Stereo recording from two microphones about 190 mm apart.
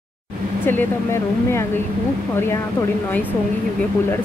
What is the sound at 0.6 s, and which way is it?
Speech, 10° left (ahead or behind).